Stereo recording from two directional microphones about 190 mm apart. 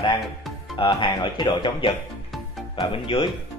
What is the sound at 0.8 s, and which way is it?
Speech, 25° left (ahead or behind).